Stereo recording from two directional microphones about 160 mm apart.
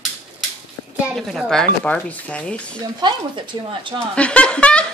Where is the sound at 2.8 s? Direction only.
30° right (ahead or behind).